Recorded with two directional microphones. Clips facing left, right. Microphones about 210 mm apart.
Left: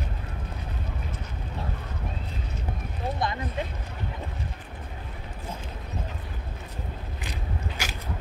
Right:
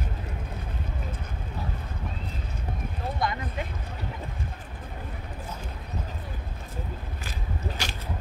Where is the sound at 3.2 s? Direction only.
25° left (ahead or behind).